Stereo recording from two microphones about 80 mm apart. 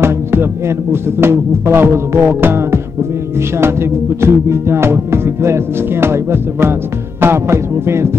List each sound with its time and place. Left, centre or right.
0.0 s music: right